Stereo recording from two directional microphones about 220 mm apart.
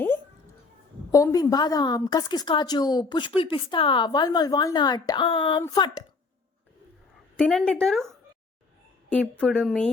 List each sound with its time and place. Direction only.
1.1 s a woman's voice: 15° left (ahead or behind)
7.3 s speech: 5° left (ahead or behind)
9.4 s speech: 5° left (ahead or behind)